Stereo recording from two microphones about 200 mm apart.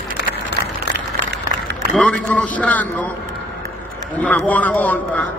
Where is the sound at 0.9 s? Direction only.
60° right (ahead or behind).